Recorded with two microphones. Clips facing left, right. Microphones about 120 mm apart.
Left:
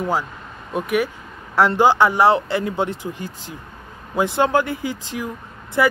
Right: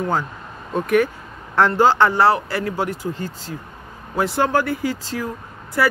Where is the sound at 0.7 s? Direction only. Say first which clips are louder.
Right 3 dB; 10° left (ahead or behind).